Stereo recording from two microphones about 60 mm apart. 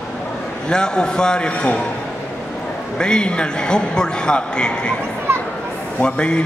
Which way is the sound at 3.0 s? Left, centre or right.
Centre.